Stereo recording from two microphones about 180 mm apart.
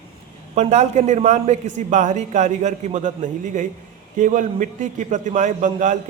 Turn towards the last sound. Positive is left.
turn(degrees=-45)  # may be behind; listen again after turning